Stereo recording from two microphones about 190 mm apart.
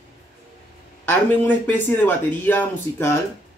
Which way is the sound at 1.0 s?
10° left (ahead or behind).